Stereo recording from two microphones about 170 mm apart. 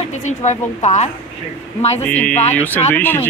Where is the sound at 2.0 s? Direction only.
10° left (ahead or behind).